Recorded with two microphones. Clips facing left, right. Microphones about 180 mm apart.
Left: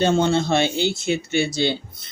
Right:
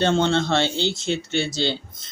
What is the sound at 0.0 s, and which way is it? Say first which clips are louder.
Speech: left 1 dB; 10° left (ahead or behind).